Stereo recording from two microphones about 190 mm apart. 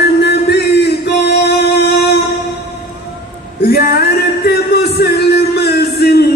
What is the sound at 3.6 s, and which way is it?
Music, 55° left (ahead or behind).